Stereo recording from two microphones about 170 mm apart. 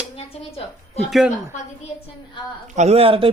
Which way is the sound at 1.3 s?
45° left (ahead or behind).